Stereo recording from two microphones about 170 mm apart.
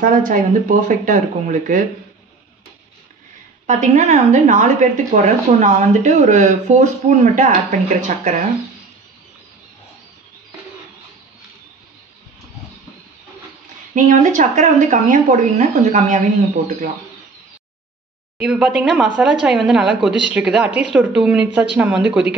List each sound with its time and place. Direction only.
0.0 s a woman's voice: 50° right (ahead or behind)
3.6 s a woman's voice: 40° right (ahead or behind)
13.9 s a woman's voice: 45° right (ahead or behind)
18.4 s speech: 5° right (ahead or behind)